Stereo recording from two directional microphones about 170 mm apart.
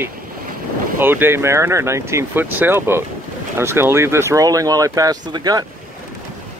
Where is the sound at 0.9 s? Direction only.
10° right (ahead or behind).